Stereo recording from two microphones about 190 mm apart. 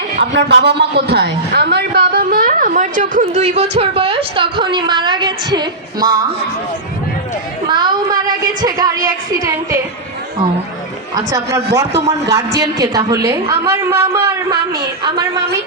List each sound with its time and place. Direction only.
0.2 s a man's voice: 60° right (ahead or behind); by 6.1 s 20° right (ahead or behind)
7.7 s a woman's voice: 25° right (ahead or behind)
11.3 s a man's voice: 15° right (ahead or behind)